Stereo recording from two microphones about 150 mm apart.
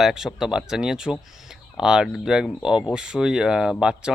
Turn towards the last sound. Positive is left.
turn(degrees=-5)  # may be behind; listen again after turning